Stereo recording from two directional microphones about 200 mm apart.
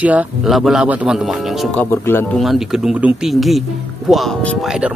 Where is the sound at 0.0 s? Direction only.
5° right (ahead or behind).